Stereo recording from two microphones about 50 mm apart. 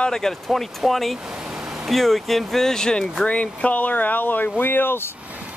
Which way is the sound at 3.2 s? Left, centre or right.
Left.